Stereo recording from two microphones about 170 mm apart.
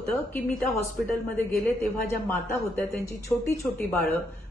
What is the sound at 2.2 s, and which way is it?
A woman's voice, 10° left (ahead or behind).